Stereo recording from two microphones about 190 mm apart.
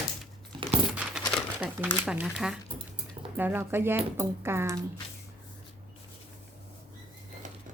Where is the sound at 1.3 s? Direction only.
5° right (ahead or behind).